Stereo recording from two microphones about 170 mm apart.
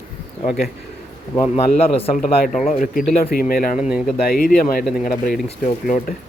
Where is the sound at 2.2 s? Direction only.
45° left (ahead or behind).